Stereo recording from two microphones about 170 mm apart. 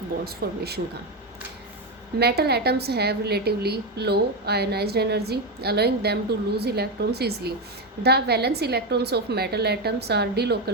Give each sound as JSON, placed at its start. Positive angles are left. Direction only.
{"t": 0.4, "sound": "a woman's voice", "side_deg": -65}
{"t": 2.1, "sound": "a woman's voice", "side_deg": -70}